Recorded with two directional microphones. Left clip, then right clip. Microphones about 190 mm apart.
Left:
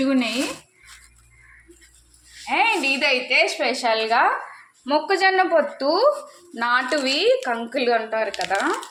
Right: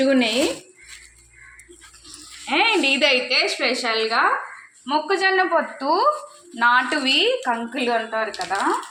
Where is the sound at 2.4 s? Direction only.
25° left (ahead or behind).